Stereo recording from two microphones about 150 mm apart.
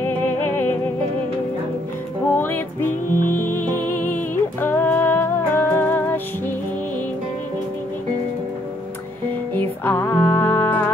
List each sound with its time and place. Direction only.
2.3 s music: 15° left (ahead or behind)
9.5 s music: 15° left (ahead or behind)